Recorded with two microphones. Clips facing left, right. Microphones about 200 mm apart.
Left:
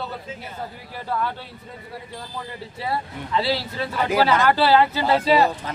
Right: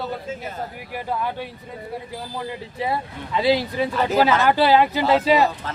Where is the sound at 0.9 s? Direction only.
15° right (ahead or behind).